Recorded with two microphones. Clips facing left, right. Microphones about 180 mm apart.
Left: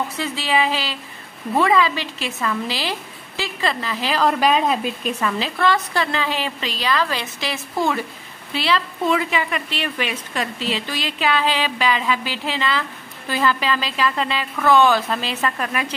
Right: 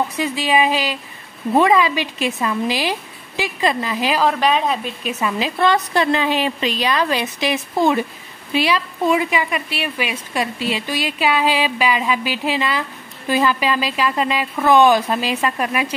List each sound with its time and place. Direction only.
0.2 s a woman's voice: 15° right (ahead or behind)
4.2 s speech: centre (ahead or behind)
5.2 s a woman's voice: 15° right (ahead or behind)